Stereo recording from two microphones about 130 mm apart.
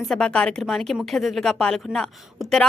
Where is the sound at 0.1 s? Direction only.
5° left (ahead or behind).